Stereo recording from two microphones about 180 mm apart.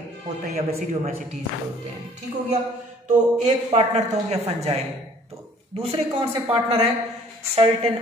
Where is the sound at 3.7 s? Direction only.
35° right (ahead or behind).